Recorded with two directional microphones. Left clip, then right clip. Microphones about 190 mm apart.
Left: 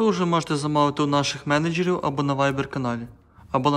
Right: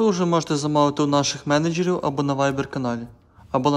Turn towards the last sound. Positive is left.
turn(degrees=-15)  # may be behind; listen again after turning